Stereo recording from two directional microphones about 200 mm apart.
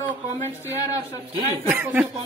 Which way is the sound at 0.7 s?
15° left (ahead or behind).